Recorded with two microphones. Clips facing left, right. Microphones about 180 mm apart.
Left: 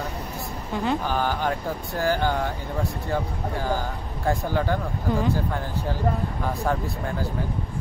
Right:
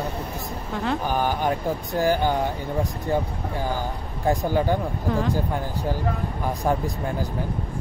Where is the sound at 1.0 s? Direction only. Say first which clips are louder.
Right 2 dB; 15° right (ahead or behind).